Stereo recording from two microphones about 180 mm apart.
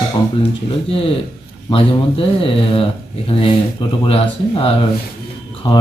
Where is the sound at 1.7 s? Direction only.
30° left (ahead or behind).